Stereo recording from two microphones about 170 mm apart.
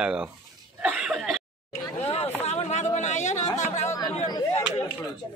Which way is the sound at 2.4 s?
40° left (ahead or behind).